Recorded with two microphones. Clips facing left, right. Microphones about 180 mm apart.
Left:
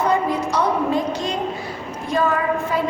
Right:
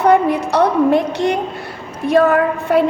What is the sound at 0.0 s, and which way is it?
A woman's voice, 65° right (ahead or behind).